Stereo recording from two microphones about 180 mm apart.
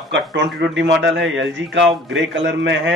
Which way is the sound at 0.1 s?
75° right (ahead or behind).